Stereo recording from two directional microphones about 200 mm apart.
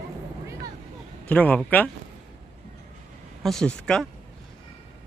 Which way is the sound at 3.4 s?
Centre (ahead or behind).